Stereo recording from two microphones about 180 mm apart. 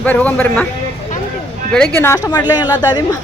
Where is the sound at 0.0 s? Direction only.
10° left (ahead or behind).